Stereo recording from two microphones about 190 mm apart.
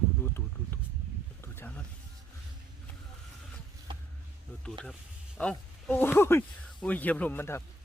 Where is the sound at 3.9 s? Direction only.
25° right (ahead or behind).